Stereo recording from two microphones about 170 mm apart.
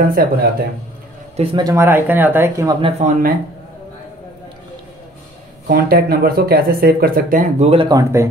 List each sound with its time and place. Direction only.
0.1 s speech: 60° right (ahead or behind)
1.3 s a man's voice: 35° right (ahead or behind)
1.6 s speech: 15° right (ahead or behind)
3.0 s speech: 55° right (ahead or behind)
5.7 s speech: 60° right (ahead or behind); by 7.9 s 35° right (ahead or behind)
7.9 s speech: 15° right (ahead or behind)